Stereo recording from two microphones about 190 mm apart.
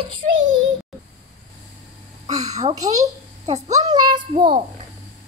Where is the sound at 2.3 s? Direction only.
20° right (ahead or behind).